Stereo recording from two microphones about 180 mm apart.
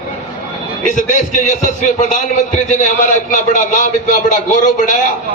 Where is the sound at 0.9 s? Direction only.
45° left (ahead or behind).